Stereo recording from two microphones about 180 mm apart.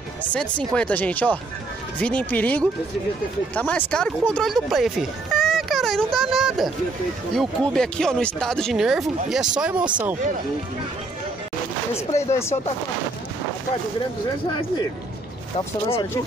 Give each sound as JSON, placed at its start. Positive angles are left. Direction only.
{"t": 0.2, "sound": "speech", "side_deg": 10}
{"t": 11.9, "sound": "speech", "side_deg": 35}
{"t": 15.5, "sound": "speech", "side_deg": 30}